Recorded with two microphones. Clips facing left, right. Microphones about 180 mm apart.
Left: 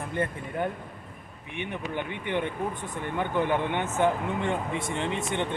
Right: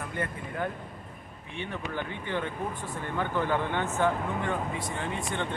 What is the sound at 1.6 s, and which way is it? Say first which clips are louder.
Speech: left 2 dB; 20° left (ahead or behind).